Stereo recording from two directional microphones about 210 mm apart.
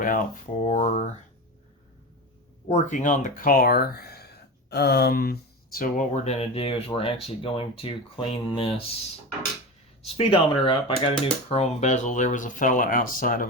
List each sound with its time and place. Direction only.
0.6 s speech: 35° left (ahead or behind)
2.6 s speech: 35° left (ahead or behind)
10.2 s speech: 25° left (ahead or behind); by 13.5 s 40° left (ahead or behind)